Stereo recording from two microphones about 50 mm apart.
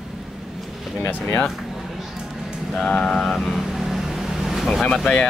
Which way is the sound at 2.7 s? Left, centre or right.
Centre.